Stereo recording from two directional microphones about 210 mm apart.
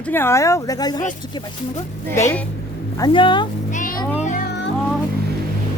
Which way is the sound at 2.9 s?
20° left (ahead or behind).